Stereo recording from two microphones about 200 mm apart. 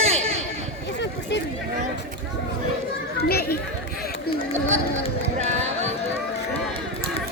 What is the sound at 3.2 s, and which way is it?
Children playing, 50° left (ahead or behind).